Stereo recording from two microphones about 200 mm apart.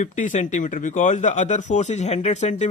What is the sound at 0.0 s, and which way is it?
Speech, 40° left (ahead or behind).